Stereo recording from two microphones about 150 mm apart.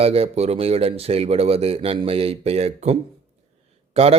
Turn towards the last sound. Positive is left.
turn(degrees=-40)  # may be behind; listen again after turning